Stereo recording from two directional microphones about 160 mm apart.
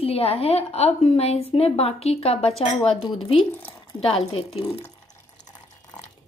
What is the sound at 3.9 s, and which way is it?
Speech, 35° left (ahead or behind).